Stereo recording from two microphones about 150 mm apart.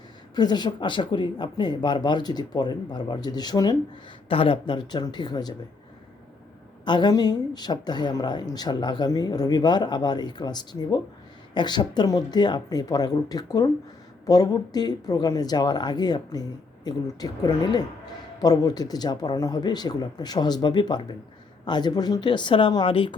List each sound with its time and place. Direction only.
0.3 s a woman's voice: 30° left (ahead or behind)
6.8 s a woman's voice: 30° left (ahead or behind)